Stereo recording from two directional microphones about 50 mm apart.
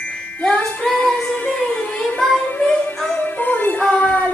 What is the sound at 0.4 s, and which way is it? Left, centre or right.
Music, centre.